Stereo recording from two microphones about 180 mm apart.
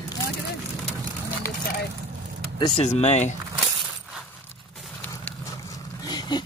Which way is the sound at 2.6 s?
35° left (ahead or behind).